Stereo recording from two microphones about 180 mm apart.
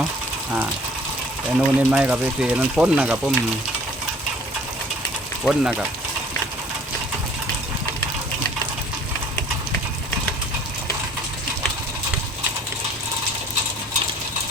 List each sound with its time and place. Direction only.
1.5 s speech: 5° right (ahead or behind)
5.5 s speech: 5° right (ahead or behind)